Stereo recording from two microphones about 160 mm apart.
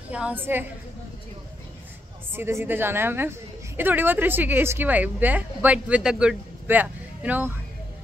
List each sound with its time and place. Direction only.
0.1 s a woman's voice: 10° right (ahead or behind)
2.3 s a woman's voice: 15° right (ahead or behind)